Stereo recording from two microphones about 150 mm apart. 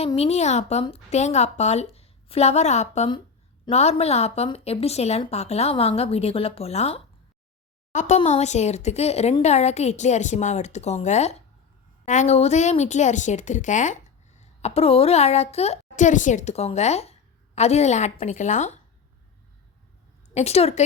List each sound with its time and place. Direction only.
0.2 s a woman's voice: 45° left (ahead or behind)
20.3 s a woman's voice: 45° left (ahead or behind)